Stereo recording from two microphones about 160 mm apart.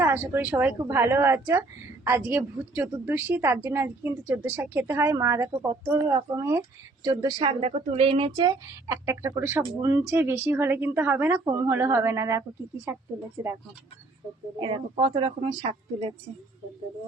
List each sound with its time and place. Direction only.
0.0 s a woman's voice: 10° right (ahead or behind)
14.6 s speech: 30° right (ahead or behind)